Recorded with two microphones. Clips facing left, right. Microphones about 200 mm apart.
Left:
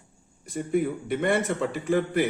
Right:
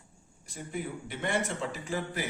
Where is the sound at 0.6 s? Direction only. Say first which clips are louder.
Left 11 dB; 60° left (ahead or behind).